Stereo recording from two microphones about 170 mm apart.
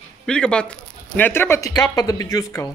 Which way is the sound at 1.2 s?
15° left (ahead or behind).